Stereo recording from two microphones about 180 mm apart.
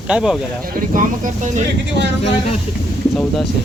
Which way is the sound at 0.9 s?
45° right (ahead or behind).